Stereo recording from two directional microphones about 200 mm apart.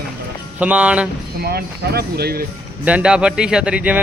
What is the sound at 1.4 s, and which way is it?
Speech, 50° right (ahead or behind).